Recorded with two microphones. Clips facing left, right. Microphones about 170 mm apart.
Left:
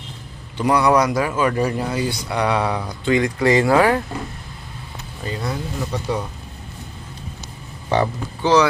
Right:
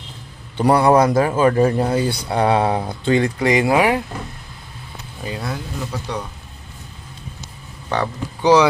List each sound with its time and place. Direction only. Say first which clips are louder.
0.6 s a man's voice: right 3 dB; 30° right (ahead or behind)
5.2 s speech: left 1 dB; 5° right (ahead or behind)
7.9 s speech: left 3 dB; 10° left (ahead or behind)
8.4 s speech: right 2 dB; 15° right (ahead or behind)